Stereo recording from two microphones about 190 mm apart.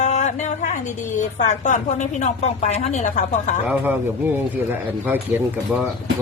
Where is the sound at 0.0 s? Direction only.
40° left (ahead or behind).